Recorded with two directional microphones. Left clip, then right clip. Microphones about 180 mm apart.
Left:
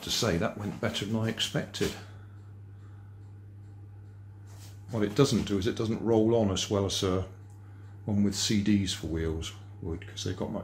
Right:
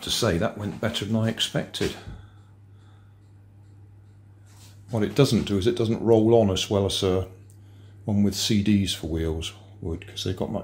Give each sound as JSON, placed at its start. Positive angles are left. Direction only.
{"t": 0.0, "sound": "speech", "side_deg": -20}
{"t": 4.9, "sound": "speech", "side_deg": -25}